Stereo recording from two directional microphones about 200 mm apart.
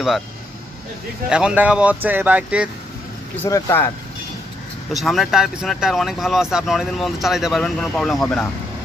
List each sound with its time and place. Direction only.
1.3 s speech: 5° right (ahead or behind)
3.4 s speech: 15° left (ahead or behind)
4.9 s speech: centre (ahead or behind)